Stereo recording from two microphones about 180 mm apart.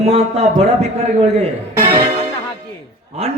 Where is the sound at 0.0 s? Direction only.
35° right (ahead or behind).